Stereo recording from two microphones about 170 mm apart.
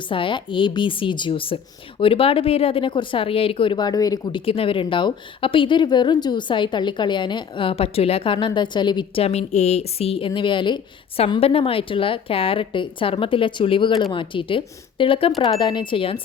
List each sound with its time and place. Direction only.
0.1 s a woman's voice: 30° left (ahead or behind)